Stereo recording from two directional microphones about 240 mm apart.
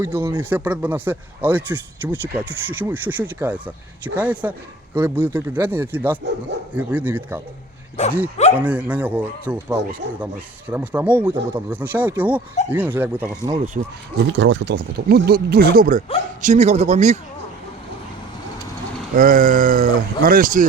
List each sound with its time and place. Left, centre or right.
0.0 s speech: centre
8.5 s speech: centre
14.3 s speech: right
19.1 s speech: right